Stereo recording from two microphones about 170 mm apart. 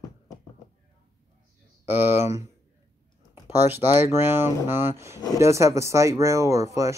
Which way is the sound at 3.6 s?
15° right (ahead or behind).